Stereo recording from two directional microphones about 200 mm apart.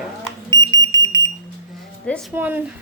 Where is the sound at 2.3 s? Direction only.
10° right (ahead or behind).